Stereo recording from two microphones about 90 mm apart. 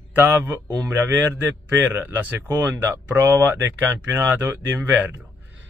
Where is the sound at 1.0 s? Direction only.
25° right (ahead or behind).